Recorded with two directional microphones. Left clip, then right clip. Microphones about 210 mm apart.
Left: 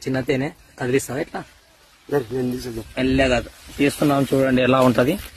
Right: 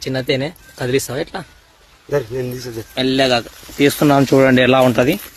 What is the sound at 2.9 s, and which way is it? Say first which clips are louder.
Speech: right 4 dB; 15° right (ahead or behind).